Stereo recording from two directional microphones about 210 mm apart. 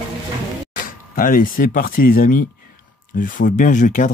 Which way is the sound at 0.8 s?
40° left (ahead or behind).